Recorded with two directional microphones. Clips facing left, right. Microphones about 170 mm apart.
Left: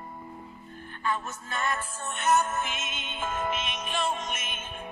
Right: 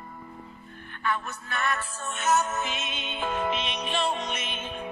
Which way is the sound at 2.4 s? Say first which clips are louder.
Right 1 dB; 50° left (ahead or behind).